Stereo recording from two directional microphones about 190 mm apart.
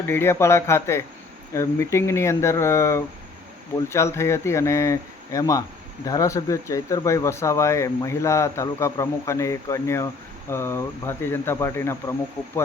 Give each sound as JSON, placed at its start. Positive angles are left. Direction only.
{"t": 0.1, "sound": "speech", "side_deg": 15}